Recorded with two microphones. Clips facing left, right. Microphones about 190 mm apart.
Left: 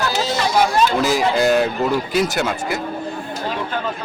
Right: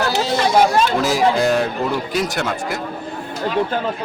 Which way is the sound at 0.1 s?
60° right (ahead or behind).